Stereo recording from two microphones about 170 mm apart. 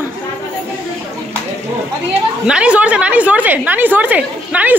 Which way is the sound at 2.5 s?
5° right (ahead or behind).